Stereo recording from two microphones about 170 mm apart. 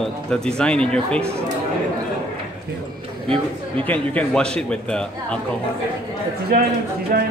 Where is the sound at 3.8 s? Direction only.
10° left (ahead or behind).